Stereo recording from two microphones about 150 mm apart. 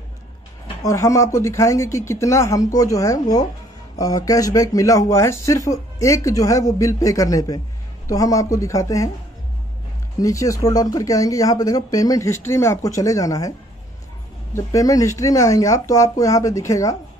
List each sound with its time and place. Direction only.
0.8 s speech: 20° left (ahead or behind)
10.2 s speech: 20° left (ahead or behind)
14.5 s speech: 20° left (ahead or behind)